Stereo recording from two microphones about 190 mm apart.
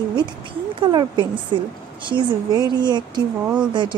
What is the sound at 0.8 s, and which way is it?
Speech, 25° right (ahead or behind).